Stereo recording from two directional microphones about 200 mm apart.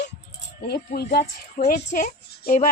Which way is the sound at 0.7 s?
55° left (ahead or behind).